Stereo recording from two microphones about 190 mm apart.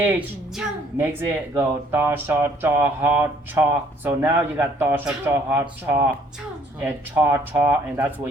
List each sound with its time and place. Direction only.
0.0 s speech: 10° right (ahead or behind)